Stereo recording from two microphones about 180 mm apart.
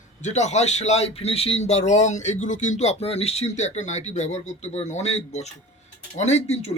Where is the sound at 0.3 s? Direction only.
40° left (ahead or behind).